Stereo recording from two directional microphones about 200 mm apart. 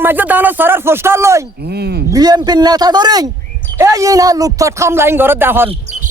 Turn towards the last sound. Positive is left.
turn(degrees=-10)  # may be behind; listen again after turning